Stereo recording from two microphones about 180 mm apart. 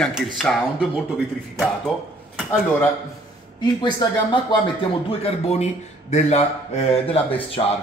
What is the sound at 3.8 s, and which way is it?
Speech, 25° left (ahead or behind).